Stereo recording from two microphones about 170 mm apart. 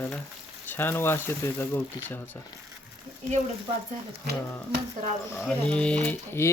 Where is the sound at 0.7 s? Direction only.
10° left (ahead or behind).